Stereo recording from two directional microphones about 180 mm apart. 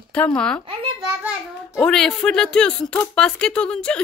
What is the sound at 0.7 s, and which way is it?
Speech, 30° right (ahead or behind).